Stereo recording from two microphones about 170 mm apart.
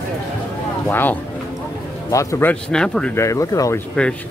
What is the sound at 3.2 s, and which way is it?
Speech, 20° left (ahead or behind).